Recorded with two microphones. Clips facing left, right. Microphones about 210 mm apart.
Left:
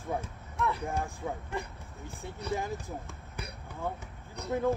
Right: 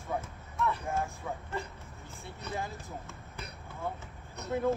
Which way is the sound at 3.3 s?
15° left (ahead or behind).